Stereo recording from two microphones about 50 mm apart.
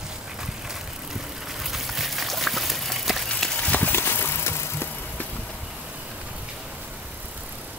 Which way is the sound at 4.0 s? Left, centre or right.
Left.